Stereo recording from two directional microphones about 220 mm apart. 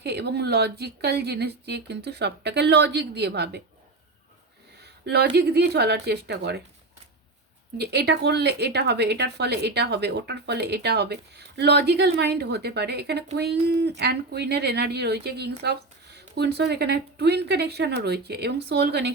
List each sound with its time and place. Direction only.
0.0 s speech: 50° right (ahead or behind)
5.0 s speech: 50° right (ahead or behind)
7.8 s speech: 50° right (ahead or behind)